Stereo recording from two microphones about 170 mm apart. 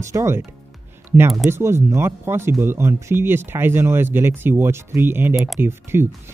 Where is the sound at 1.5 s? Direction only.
15° right (ahead or behind).